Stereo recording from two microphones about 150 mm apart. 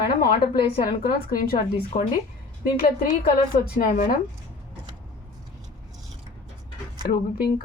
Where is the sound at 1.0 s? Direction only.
90° left.